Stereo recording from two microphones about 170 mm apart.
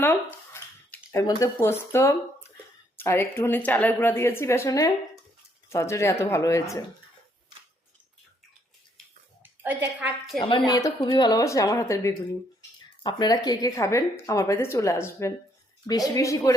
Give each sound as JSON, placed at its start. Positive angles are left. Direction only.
{"t": 0.0, "sound": "speech", "side_deg": 15}
{"t": 9.4, "sound": "a woman's voice", "side_deg": -10}
{"t": 10.7, "sound": "a woman's voice", "side_deg": 20}